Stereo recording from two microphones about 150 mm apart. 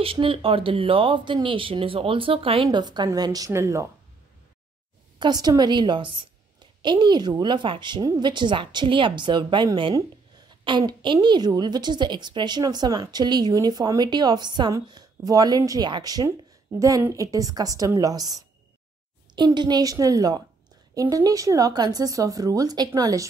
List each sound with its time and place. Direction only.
0.0 s a woman's voice: 35° right (ahead or behind); by 3.9 s 20° right (ahead or behind)
5.2 s a woman's voice: 25° right (ahead or behind)